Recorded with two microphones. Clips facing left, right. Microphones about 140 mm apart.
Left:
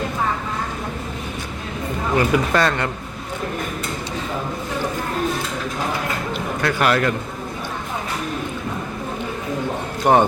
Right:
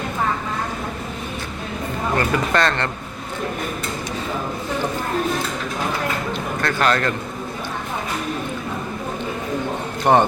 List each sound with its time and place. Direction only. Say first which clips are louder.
2.1 s speech: left 2 dB; 10° left (ahead or behind)
6.6 s speech: left 1 dB; 10° left (ahead or behind)
10.0 s a man's voice: even; 5° left (ahead or behind)